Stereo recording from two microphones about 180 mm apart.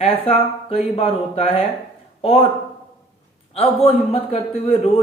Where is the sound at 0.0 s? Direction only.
30° left (ahead or behind).